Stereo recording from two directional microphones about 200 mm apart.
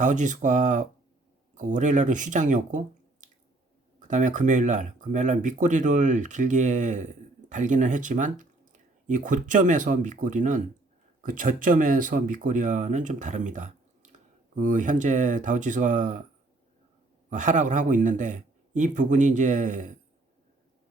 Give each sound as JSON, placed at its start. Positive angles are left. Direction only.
{"t": 0.0, "sound": "speech", "side_deg": -40}
{"t": 17.2, "sound": "speech", "side_deg": -40}